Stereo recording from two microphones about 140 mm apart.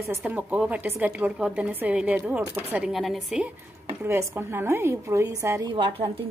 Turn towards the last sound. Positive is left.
turn(degrees=-35)  # may be behind; listen again after turning